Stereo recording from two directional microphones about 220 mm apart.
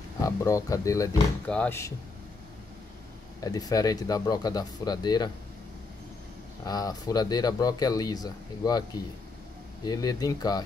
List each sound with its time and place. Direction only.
0.2 s speech: 15° left (ahead or behind)
3.3 s speech: 15° left (ahead or behind)
6.6 s speech: 15° left (ahead or behind)
9.8 s speech: 15° left (ahead or behind)